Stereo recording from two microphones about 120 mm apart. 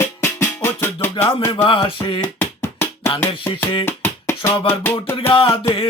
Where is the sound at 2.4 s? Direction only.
20° left (ahead or behind).